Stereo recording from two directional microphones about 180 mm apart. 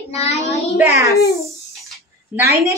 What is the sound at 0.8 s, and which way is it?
Speech, 15° right (ahead or behind).